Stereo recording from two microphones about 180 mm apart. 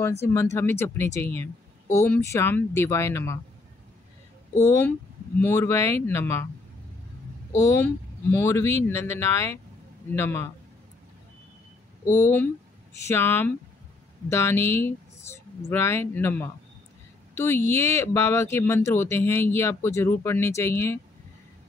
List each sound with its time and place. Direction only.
0.2 s speech: 15° left (ahead or behind)
4.6 s speech: 10° left (ahead or behind)
7.5 s speech: 15° left (ahead or behind)
12.1 s speech: 10° left (ahead or behind)